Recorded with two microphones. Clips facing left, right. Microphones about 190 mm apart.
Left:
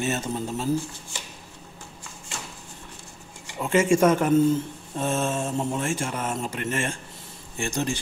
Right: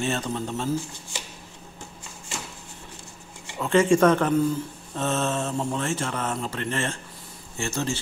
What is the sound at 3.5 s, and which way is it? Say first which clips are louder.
Mantra: right 1 dB; 10° left (ahead or behind).